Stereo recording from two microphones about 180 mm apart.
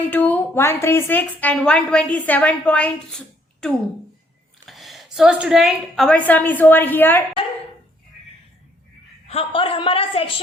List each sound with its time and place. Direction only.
0.1 s a woman's voice: 10° left (ahead or behind)
9.2 s a man's voice: 30° left (ahead or behind)